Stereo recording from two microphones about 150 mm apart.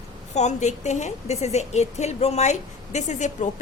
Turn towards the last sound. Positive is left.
turn(degrees=55)  # may be behind; listen again after turning